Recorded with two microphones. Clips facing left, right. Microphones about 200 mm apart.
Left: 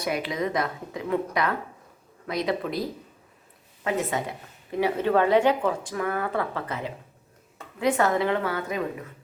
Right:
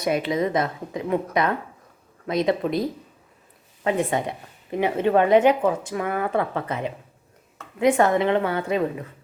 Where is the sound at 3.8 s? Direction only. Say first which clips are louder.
Right 4 dB; 25° right (ahead or behind).